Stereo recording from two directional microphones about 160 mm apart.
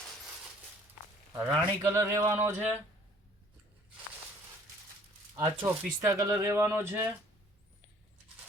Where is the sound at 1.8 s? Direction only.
20° right (ahead or behind).